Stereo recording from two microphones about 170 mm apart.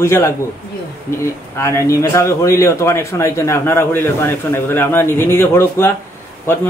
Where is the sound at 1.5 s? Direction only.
15° left (ahead or behind).